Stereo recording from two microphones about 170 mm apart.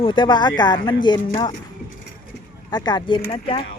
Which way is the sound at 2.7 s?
25° left (ahead or behind).